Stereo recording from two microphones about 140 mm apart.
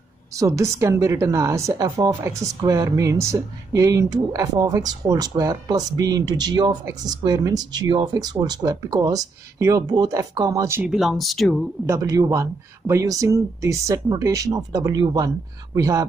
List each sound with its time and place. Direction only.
0.3 s speech: 25° right (ahead or behind)
10.9 s speech: centre (ahead or behind)
11.8 s speech: 25° right (ahead or behind)